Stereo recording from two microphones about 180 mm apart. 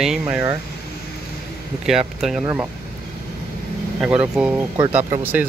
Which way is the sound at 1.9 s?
Centre (ahead or behind).